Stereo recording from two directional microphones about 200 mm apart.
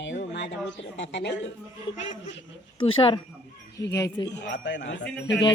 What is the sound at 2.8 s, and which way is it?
Speech, 25° left (ahead or behind).